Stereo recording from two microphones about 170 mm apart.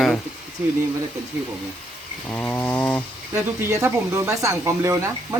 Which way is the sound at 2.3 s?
10° left (ahead or behind).